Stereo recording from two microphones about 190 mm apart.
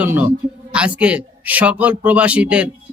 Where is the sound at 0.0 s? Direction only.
10° right (ahead or behind).